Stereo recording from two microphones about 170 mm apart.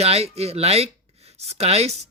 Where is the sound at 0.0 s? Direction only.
40° right (ahead or behind).